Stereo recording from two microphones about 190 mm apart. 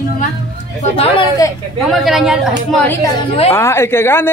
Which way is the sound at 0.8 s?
30° left (ahead or behind).